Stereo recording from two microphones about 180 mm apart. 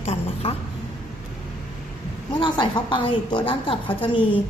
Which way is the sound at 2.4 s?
25° left (ahead or behind).